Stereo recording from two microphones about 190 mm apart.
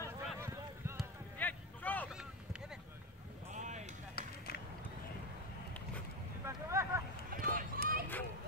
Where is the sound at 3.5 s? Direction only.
40° right (ahead or behind).